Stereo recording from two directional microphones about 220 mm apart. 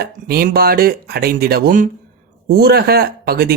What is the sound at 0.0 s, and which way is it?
Speech, 45° right (ahead or behind).